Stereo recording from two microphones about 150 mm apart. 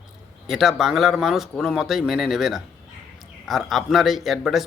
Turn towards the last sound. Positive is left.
turn(degrees=0)  # may be behind; listen again after turning